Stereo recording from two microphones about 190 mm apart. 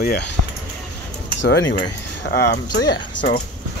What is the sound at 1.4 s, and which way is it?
Speech, 70° left (ahead or behind).